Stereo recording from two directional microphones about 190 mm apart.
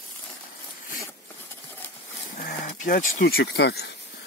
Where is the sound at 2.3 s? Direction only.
45° left (ahead or behind); by 3.9 s 65° left (ahead or behind).